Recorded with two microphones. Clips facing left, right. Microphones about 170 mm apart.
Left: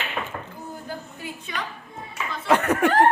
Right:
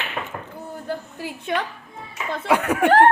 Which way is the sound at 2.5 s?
10° right (ahead or behind).